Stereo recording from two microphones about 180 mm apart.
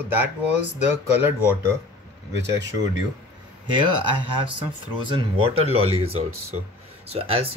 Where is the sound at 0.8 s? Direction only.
10° right (ahead or behind).